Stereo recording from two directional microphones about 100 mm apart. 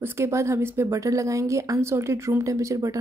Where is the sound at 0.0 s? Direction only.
30° right (ahead or behind).